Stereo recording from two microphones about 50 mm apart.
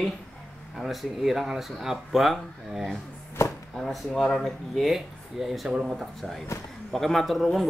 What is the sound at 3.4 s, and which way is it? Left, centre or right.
Chopping, left.